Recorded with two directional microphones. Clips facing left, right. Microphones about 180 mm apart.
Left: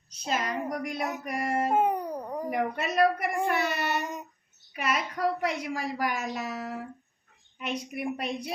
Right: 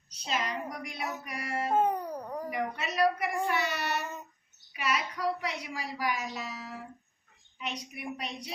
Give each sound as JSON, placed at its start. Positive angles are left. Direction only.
{"t": 0.3, "sound": "a woman's voice", "side_deg": 50}
{"t": 1.7, "sound": "cat", "side_deg": 15}
{"t": 2.5, "sound": "a woman's voice", "side_deg": 50}
{"t": 3.9, "sound": "child singing", "side_deg": 15}
{"t": 4.7, "sound": "a woman's voice", "side_deg": 50}